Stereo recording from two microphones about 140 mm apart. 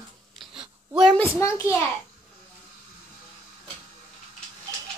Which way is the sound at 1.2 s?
20° left (ahead or behind).